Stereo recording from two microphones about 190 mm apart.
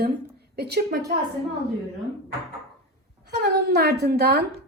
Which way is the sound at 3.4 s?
60° right (ahead or behind).